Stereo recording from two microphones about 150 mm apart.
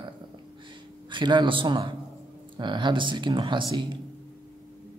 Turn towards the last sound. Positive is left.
turn(degrees=-30)  # may be behind; listen again after turning